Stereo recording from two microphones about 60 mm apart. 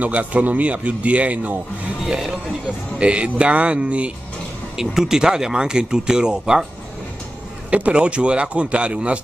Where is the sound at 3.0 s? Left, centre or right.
Centre.